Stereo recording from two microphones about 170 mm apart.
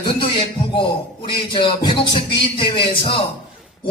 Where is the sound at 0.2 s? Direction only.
30° left (ahead or behind).